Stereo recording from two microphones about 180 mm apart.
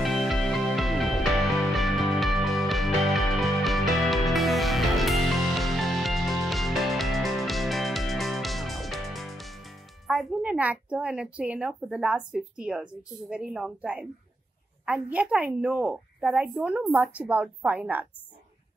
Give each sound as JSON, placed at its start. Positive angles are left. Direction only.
{"t": 0.0, "sound": "music", "side_deg": 0}
{"t": 14.9, "sound": "a woman's voice", "side_deg": -5}